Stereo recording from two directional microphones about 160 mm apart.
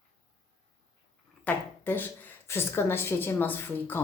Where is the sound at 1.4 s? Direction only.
10° left (ahead or behind).